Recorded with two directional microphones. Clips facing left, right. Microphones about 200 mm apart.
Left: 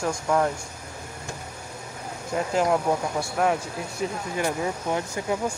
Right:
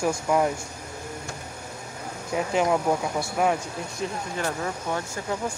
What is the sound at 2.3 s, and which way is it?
Speech, centre (ahead or behind).